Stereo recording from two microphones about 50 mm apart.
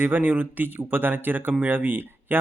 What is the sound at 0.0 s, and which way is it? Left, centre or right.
Speech, right.